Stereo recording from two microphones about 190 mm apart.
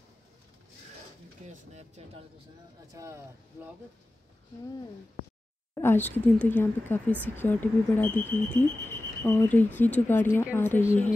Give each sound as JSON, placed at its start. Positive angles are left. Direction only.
{"t": 1.4, "sound": "speech", "side_deg": -35}
{"t": 2.9, "sound": "speech", "side_deg": -15}
{"t": 6.0, "sound": "speech", "side_deg": 10}